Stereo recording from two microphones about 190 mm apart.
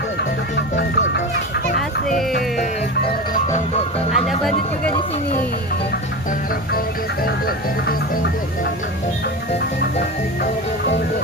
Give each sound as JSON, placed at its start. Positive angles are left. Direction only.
{"t": 0.5, "sound": "a child's voice", "side_deg": 65}
{"t": 2.3, "sound": "music", "side_deg": 50}
{"t": 4.1, "sound": "speech", "side_deg": 0}
{"t": 7.3, "sound": "speech", "side_deg": 55}